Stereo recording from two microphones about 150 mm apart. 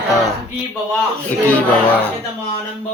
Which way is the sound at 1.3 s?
10° left (ahead or behind).